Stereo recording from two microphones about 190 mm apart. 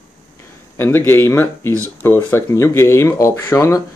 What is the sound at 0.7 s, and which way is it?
Speech, 10° left (ahead or behind).